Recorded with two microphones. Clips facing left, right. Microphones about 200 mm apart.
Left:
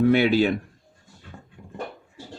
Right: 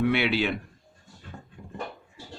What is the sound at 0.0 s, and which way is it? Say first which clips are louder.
Speech: left 6 dB; 45° left (ahead or behind).